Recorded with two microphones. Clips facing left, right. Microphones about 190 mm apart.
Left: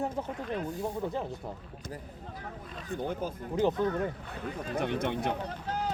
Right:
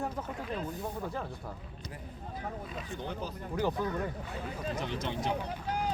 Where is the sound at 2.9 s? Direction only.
50° left (ahead or behind).